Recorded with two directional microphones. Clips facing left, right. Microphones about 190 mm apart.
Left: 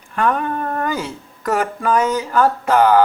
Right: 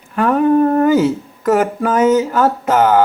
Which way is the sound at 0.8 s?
5° right (ahead or behind).